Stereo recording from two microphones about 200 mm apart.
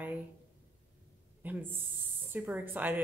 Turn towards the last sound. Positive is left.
turn(degrees=-10)  # may be behind; listen again after turning